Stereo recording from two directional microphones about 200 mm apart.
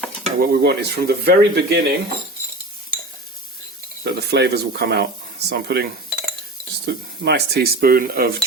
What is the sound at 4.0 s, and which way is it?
Speech, 55° right (ahead or behind).